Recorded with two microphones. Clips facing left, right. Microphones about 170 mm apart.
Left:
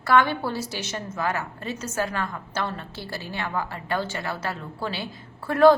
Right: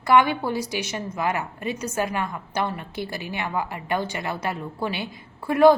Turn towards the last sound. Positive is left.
turn(degrees=-15)  # may be behind; listen again after turning